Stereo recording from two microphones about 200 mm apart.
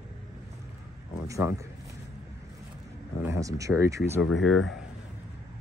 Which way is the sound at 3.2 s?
15° right (ahead or behind).